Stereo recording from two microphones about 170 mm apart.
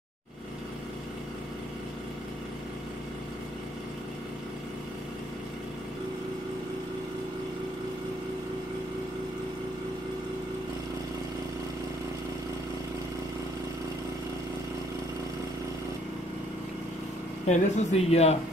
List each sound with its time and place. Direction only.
17.5 s speech: 40° left (ahead or behind)